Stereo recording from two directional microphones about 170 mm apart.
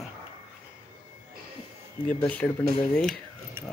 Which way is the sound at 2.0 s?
10° left (ahead or behind).